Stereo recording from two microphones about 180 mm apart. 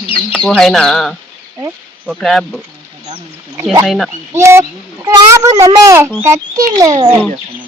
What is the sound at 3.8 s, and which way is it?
Speech, centre (ahead or behind).